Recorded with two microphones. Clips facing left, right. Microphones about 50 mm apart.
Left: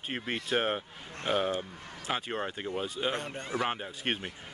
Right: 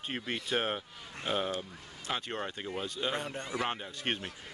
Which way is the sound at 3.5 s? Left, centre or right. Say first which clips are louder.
Left 3 dB; centre.